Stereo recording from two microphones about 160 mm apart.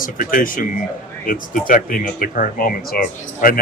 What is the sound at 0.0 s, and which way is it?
Speech, 60° left (ahead or behind).